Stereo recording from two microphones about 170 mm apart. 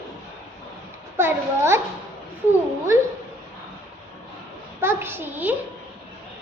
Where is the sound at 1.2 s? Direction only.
15° right (ahead or behind).